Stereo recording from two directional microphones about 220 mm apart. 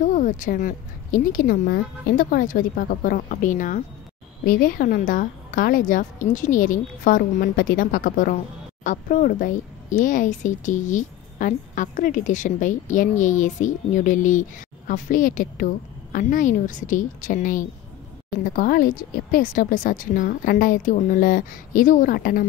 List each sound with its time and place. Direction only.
0.0 s speech: 35° left (ahead or behind)